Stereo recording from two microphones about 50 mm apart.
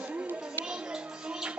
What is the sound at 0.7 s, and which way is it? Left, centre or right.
Music, centre.